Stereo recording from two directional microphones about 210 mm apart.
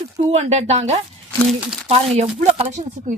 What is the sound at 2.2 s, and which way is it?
Speech, 30° right (ahead or behind).